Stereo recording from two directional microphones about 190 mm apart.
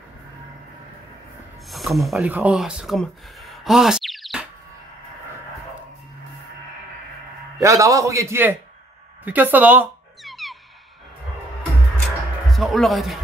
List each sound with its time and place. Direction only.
1.7 s speech: centre (ahead or behind)
7.6 s a man's voice: 15° right (ahead or behind)
9.2 s cat: 10° right (ahead or behind)
12.4 s speech: centre (ahead or behind)